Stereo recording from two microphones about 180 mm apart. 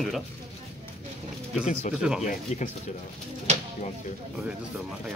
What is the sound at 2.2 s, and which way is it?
Speech, 45° left (ahead or behind).